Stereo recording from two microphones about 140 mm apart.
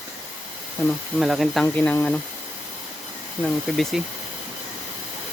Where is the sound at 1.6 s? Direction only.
15° left (ahead or behind).